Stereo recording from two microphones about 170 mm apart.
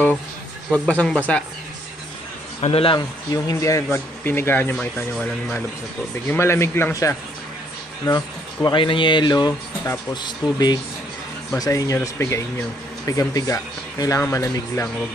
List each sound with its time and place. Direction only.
0.7 s speech: 5° left (ahead or behind)
2.6 s a man's voice: 35° left (ahead or behind)
3.4 s speech: 20° left (ahead or behind)